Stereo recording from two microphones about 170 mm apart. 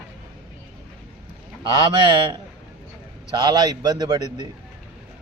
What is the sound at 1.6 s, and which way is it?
A man's voice, 25° right (ahead or behind).